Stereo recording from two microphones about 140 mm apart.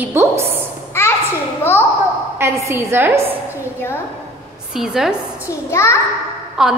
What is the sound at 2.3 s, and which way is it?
Speech, 20° right (ahead or behind).